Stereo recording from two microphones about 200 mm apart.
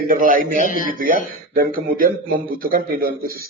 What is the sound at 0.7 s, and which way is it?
Speech, 45° left (ahead or behind).